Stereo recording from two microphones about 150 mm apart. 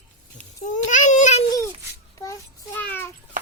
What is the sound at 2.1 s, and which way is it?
Child singing, 20° left (ahead or behind).